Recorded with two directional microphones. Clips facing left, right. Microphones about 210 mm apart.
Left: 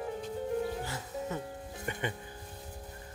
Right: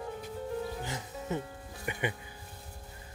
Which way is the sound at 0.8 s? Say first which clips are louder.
Left 2 dB; 20° right (ahead or behind).